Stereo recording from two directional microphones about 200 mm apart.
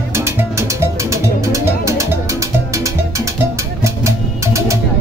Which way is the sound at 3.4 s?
15° right (ahead or behind).